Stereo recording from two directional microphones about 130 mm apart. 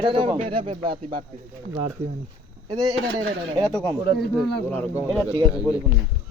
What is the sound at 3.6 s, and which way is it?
Speech, 5° left (ahead or behind).